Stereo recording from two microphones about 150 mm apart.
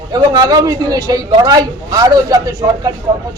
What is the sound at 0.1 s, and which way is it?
A man's voice, 25° right (ahead or behind).